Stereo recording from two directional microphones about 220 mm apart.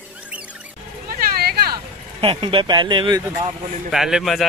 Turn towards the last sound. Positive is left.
turn(degrees=0)  # may be behind; listen again after turning